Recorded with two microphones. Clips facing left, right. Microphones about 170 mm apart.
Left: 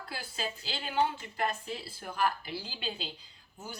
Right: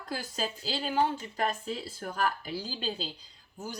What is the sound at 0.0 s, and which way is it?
Speech, 40° right (ahead or behind).